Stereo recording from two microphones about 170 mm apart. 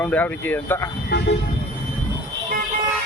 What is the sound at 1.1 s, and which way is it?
Vehicle, 75° left (ahead or behind).